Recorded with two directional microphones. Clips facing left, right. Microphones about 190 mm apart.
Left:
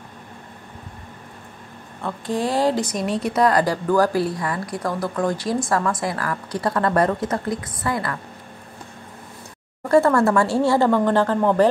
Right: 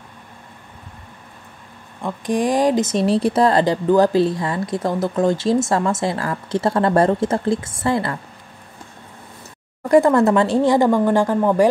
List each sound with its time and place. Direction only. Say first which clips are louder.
2.0 s speech: right 4 dB; 15° right (ahead or behind)
9.8 s speech: right 3 dB; 15° right (ahead or behind)